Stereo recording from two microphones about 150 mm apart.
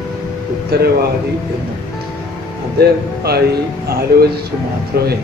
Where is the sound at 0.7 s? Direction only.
90° right.